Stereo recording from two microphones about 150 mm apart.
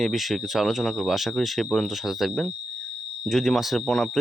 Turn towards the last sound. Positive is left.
turn(degrees=0)  # may be behind; listen again after turning